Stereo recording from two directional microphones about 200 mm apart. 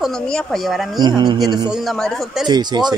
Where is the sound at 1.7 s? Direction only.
Centre (ahead or behind).